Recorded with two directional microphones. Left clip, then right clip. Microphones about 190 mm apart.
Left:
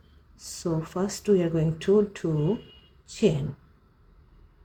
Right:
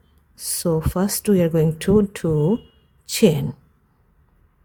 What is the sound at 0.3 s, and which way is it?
Speech, 55° right (ahead or behind).